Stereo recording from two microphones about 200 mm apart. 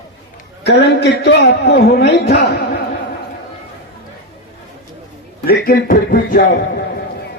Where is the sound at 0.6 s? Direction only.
55° left (ahead or behind).